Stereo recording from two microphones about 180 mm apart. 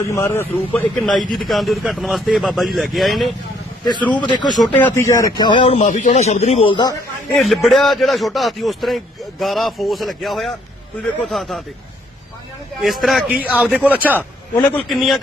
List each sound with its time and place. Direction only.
0.0 s a man's voice: 15° left (ahead or behind); by 3.3 s centre (ahead or behind)
4.1 s speech: 25° left (ahead or behind)
4.6 s speech: 10° left (ahead or behind); by 6.9 s 25° left (ahead or behind)
7.3 s speech: centre (ahead or behind)
12.8 s speech: centre (ahead or behind)
14.8 s speech: centre (ahead or behind)